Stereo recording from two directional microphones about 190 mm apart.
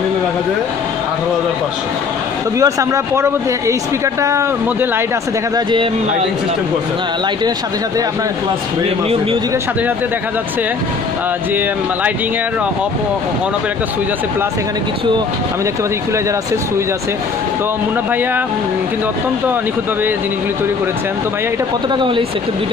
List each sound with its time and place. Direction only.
2.6 s speech: 15° right (ahead or behind)
21.9 s speech: 25° right (ahead or behind)